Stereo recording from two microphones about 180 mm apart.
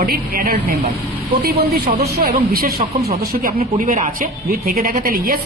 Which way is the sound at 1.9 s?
60° right (ahead or behind).